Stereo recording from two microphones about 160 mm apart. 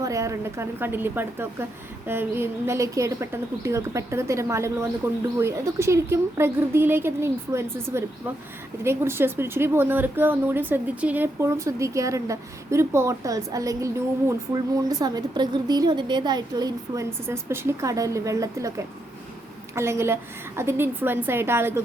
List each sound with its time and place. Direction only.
0.0 s a woman's voice: 20° right (ahead or behind)
19.7 s speech: 15° right (ahead or behind)